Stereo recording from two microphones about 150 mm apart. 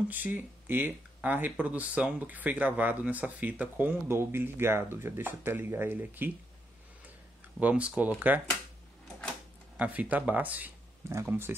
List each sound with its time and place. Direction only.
0.1 s speech: 10° right (ahead or behind)
7.6 s speech: 10° right (ahead or behind)
9.8 s speech: 10° right (ahead or behind)